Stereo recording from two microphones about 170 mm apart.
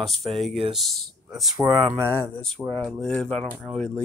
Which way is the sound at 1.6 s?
20° right (ahead or behind).